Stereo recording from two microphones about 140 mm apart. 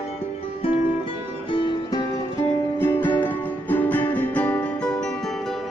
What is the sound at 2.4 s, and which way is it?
Music, 15° left (ahead or behind).